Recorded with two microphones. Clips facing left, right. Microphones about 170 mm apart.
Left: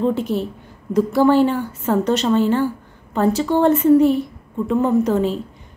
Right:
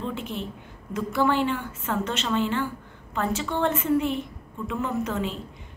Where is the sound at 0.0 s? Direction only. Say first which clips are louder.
Left 12 dB; 40° left (ahead or behind).